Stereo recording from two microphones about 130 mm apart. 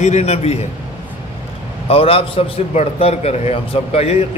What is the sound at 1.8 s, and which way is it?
A man's voice, 50° left (ahead or behind).